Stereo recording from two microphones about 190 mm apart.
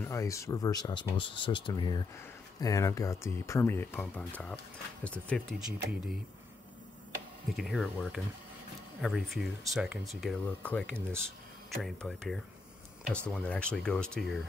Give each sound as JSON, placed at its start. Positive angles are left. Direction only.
{"t": 0.0, "sound": "speech", "side_deg": 15}
{"t": 7.5, "sound": "speech", "side_deg": 0}